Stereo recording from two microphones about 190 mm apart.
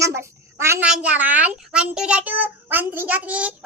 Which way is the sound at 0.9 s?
5° right (ahead or behind).